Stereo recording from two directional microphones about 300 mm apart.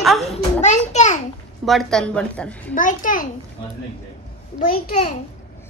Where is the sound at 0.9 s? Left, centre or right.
Left.